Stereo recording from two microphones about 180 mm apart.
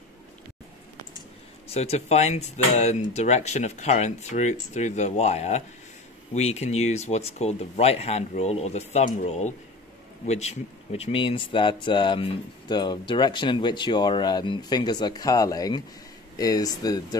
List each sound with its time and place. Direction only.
1.7 s speech: 35° left (ahead or behind)